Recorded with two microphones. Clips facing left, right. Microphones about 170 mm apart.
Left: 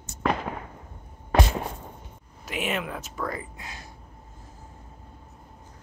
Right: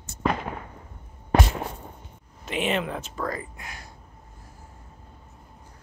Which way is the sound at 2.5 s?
5° left (ahead or behind).